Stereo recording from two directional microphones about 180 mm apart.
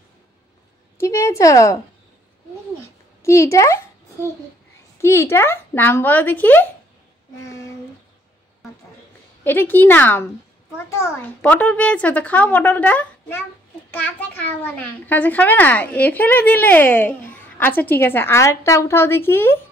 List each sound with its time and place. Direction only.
0.9 s a child's voice: 15° left (ahead or behind)
3.2 s speech: 15° left (ahead or behind)
5.0 s a child's voice: 15° left (ahead or behind)
7.4 s a sound: 15° left (ahead or behind)
9.4 s a child's voice: 10° left (ahead or behind)